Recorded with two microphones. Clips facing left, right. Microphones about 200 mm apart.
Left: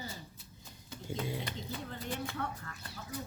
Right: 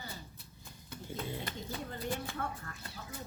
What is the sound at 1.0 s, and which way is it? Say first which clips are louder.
Bird: left 3 dB; 15° left (ahead or behind).